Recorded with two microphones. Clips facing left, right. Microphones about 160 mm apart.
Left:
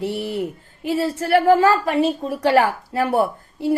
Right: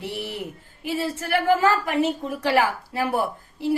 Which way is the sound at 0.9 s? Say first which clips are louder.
Left 6 dB; 35° left (ahead or behind).